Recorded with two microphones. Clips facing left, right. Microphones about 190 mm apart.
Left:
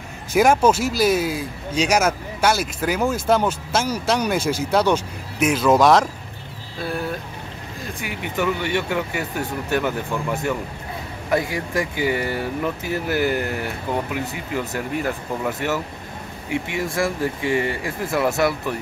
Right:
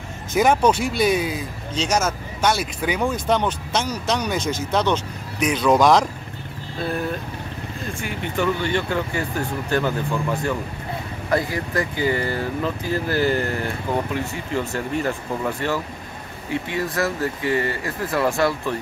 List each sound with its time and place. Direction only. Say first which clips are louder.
0.3 s speech: left 1 dB; 5° left (ahead or behind)
6.8 s vehicle: right 1 dB; 5° left (ahead or behind)
8.0 s speech: even; 10° left (ahead or behind)
11.2 s speech: even; 10° left (ahead or behind)